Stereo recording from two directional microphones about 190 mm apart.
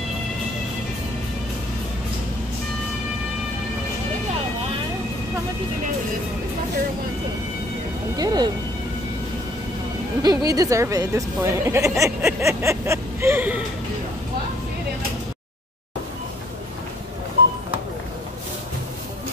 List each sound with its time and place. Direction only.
8.2 s a woman's voice: 20° right (ahead or behind)
10.2 s a woman's voice: 20° right (ahead or behind)